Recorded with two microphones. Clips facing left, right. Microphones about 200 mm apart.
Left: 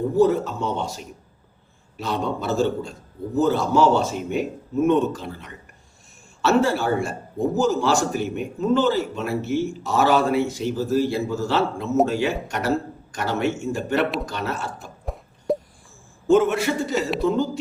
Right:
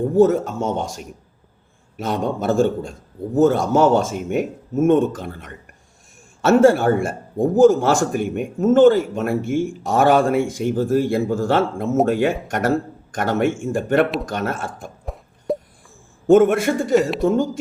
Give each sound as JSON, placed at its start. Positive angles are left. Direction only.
{"t": 0.2, "sound": "a man's voice", "side_deg": -50}
{"t": 15.0, "sound": "a sound", "side_deg": 0}
{"t": 16.2, "sound": "a man's voice", "side_deg": -55}